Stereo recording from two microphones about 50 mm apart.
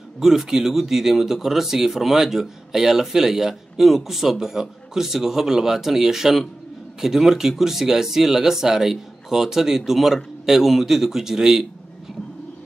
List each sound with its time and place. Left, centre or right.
0.2 s speech: centre